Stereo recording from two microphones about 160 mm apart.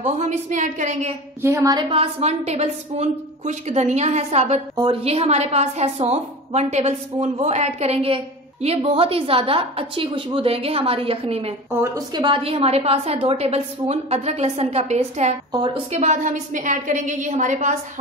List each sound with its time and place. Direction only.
0.0 s a woman's voice: 50° right (ahead or behind)
1.4 s a woman's voice: 20° right (ahead or behind); by 11.5 s 40° right (ahead or behind)
11.8 s a woman's voice: 25° right (ahead or behind); by 15.3 s 45° right (ahead or behind)
15.5 s a woman's voice: 35° right (ahead or behind)
16.0 s a woman's voice: 50° right (ahead or behind)